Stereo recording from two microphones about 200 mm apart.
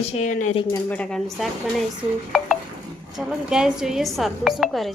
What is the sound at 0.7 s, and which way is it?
Speech, 5° left (ahead or behind).